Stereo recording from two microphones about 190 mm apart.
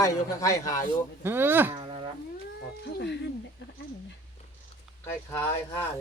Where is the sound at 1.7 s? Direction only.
25° right (ahead or behind).